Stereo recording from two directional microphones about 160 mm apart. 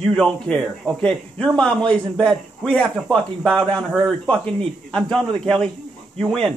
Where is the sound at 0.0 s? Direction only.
5° left (ahead or behind).